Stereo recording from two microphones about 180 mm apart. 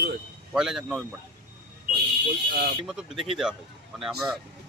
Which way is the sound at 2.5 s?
65° right (ahead or behind).